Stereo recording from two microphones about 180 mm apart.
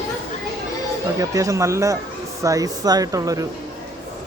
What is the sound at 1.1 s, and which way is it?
Speech, 20° right (ahead or behind).